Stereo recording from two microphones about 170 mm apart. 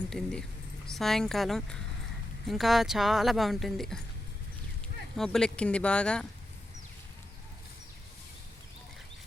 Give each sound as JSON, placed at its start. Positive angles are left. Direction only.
{"t": 0.1, "sound": "speech", "side_deg": 5}
{"t": 5.1, "sound": "speech", "side_deg": 5}